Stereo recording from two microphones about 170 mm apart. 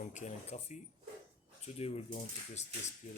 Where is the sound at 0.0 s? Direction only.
45° left (ahead or behind).